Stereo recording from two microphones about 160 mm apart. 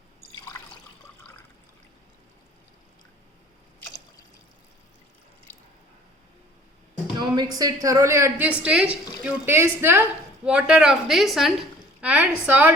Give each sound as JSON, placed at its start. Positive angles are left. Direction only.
{"t": 7.2, "sound": "a woman's voice", "side_deg": -25}
{"t": 8.4, "sound": "a woman's voice", "side_deg": -5}